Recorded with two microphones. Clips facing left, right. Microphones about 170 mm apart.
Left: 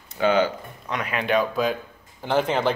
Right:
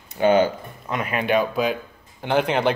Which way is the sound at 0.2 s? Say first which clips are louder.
Right 3 dB; 45° right (ahead or behind).